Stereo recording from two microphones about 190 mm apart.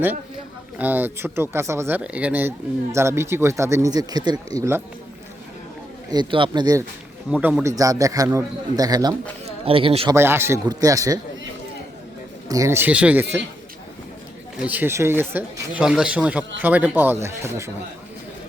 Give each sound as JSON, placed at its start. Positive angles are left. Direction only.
{"t": 0.8, "sound": "speech", "side_deg": -10}
{"t": 6.1, "sound": "speech", "side_deg": -25}
{"t": 10.2, "sound": "speech", "side_deg": -10}
{"t": 12.5, "sound": "speech", "side_deg": -15}
{"t": 14.5, "sound": "speech", "side_deg": -5}